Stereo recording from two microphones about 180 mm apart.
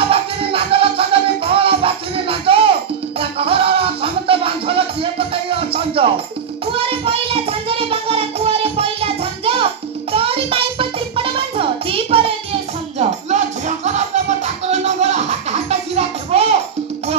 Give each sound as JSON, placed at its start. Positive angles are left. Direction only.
{"t": 0.1, "sound": "music", "side_deg": -30}